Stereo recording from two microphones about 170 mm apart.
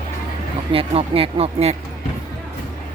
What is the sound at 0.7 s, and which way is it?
Speech, 35° right (ahead or behind).